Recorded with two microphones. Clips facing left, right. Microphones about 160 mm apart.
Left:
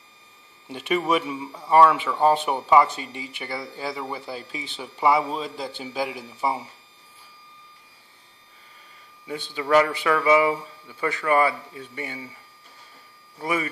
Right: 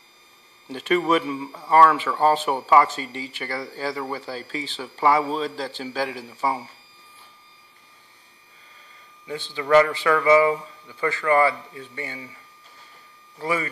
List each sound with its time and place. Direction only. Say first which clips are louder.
0.7 s speech: right 2 dB; 15° left (ahead or behind)
9.3 s speech: right 2 dB; 15° left (ahead or behind)
13.4 s speech: right 1 dB; 15° left (ahead or behind)